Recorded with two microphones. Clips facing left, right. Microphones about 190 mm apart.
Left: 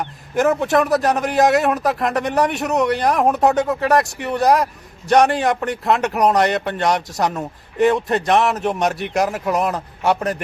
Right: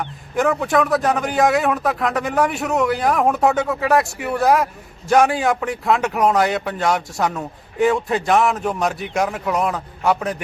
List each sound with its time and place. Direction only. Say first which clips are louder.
0.3 s a man's voice: left 2 dB; centre (ahead or behind)